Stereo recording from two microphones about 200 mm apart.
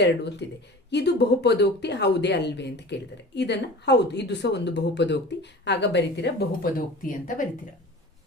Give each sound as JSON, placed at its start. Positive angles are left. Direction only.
{"t": 0.4, "sound": "a woman's voice", "side_deg": 60}